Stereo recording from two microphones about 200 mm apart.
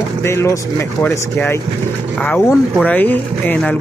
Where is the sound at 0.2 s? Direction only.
15° left (ahead or behind).